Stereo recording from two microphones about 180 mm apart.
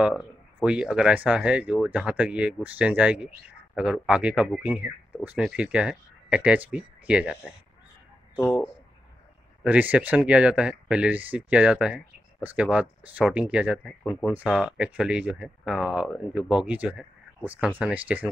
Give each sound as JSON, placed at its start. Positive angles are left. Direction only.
{"t": 0.7, "sound": "speech", "side_deg": -5}
{"t": 9.6, "sound": "speech", "side_deg": -10}